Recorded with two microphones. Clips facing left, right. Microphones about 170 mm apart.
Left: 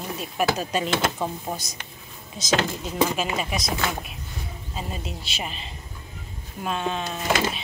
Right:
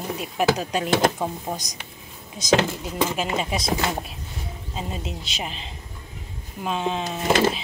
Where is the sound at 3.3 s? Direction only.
25° right (ahead or behind).